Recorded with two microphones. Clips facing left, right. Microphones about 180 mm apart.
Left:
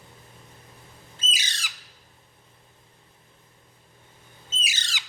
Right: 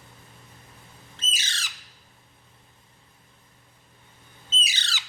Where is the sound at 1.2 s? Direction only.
15° left (ahead or behind).